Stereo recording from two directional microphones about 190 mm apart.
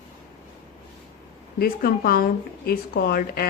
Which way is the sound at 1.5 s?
50° left (ahead or behind).